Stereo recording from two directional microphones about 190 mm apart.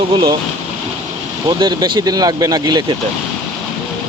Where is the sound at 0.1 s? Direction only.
25° right (ahead or behind).